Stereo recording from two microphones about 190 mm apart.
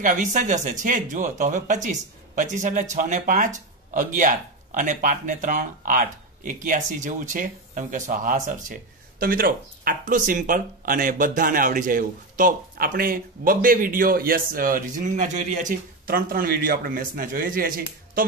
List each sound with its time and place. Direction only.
0.0 s speech: 45° right (ahead or behind)